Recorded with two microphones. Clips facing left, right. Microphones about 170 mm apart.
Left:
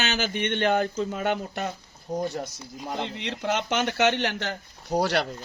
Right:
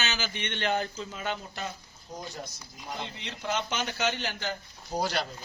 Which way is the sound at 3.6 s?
70° left (ahead or behind).